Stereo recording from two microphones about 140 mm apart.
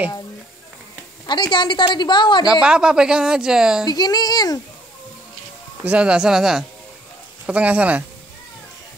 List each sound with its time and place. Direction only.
1.2 s a woman's voice: 35° left (ahead or behind)
2.6 s speech: 5° right (ahead or behind)
3.8 s speech: 30° left (ahead or behind)
5.9 s speech: 10° right (ahead or behind)